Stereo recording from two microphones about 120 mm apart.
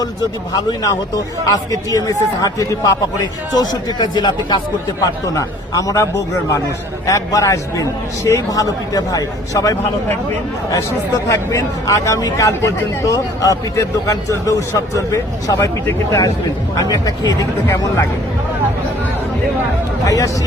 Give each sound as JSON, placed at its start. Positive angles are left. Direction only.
{"t": 0.5, "sound": "speech", "side_deg": 30}
{"t": 11.5, "sound": "speech", "side_deg": 25}
{"t": 20.1, "sound": "speech", "side_deg": 25}